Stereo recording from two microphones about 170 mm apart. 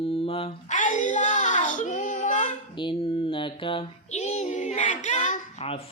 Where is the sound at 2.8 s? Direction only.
30° left (ahead or behind).